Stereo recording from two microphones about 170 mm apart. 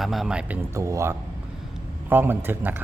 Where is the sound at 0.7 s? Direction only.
20° right (ahead or behind).